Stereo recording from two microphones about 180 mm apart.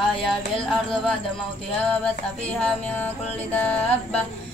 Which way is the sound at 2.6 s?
5° left (ahead or behind).